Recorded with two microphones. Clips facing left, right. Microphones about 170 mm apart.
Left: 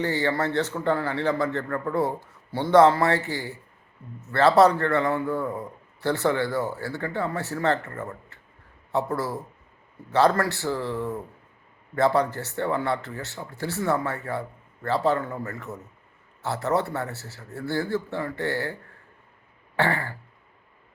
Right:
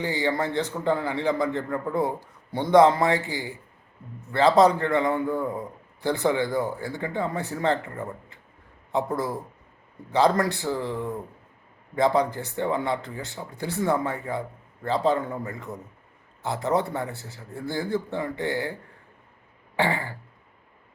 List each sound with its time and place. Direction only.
0.0 s a man's voice: 15° right (ahead or behind)
19.7 s a man's voice: 15° right (ahead or behind)